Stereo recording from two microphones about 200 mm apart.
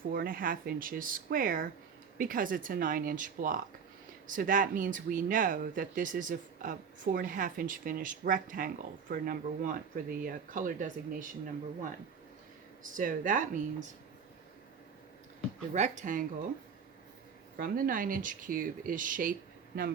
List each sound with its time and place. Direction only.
0.1 s speech: 45° right (ahead or behind)
12.8 s speech: 40° right (ahead or behind)
15.7 s speech: 35° right (ahead or behind)
17.6 s speech: 45° right (ahead or behind)